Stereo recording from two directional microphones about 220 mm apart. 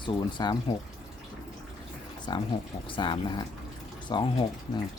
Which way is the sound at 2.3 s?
20° left (ahead or behind).